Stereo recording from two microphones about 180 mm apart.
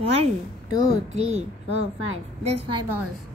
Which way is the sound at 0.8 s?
40° right (ahead or behind).